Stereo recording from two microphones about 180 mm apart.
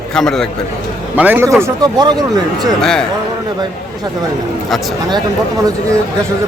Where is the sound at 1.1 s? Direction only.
10° right (ahead or behind).